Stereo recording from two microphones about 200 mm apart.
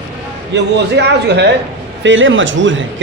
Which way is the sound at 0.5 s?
60° right (ahead or behind).